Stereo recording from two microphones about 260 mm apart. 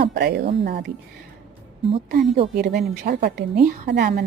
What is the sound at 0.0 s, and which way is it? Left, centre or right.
Speech, right.